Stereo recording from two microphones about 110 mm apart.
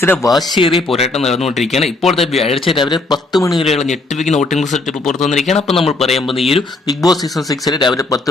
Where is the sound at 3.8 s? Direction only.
90° left.